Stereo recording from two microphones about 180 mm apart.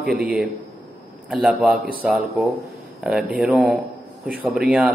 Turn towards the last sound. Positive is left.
turn(degrees=0)  # may be behind; listen again after turning